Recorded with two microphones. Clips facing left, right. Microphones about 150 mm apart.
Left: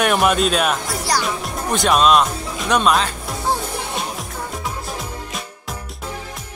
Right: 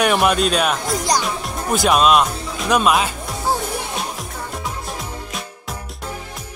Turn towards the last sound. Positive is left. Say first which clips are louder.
# even
turn(degrees=0)  # may be behind; listen again after turning